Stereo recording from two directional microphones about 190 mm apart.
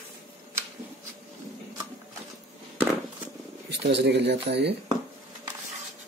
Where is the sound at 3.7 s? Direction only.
60° right (ahead or behind).